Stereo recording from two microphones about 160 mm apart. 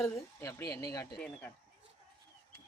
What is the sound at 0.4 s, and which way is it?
Speech, 20° left (ahead or behind).